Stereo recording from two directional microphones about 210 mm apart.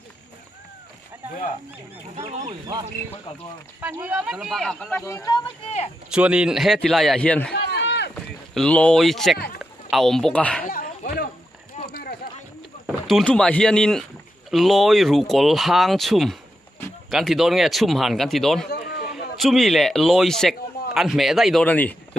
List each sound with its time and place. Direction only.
2.1 s speech: 30° right (ahead or behind)
3.8 s speech: 5° right (ahead or behind)
5.0 s speech: 15° left (ahead or behind)
6.0 s speech: 5° right (ahead or behind)
7.7 s a sound: 55° left (ahead or behind)
8.5 s speech: 5° left (ahead or behind)
10.6 s a sound: 45° left (ahead or behind)
12.8 s speech: centre (ahead or behind)
18.7 s a sound: 45° left (ahead or behind)
19.0 s a man's voice: centre (ahead or behind)